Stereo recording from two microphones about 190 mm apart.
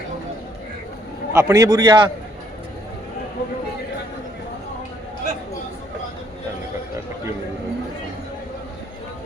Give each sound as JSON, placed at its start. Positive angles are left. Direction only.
{"t": 1.3, "sound": "a man's voice", "side_deg": -15}